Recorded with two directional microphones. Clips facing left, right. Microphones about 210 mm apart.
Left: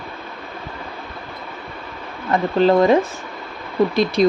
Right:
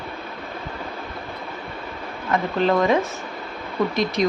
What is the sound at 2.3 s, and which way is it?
Speech, 35° left (ahead or behind).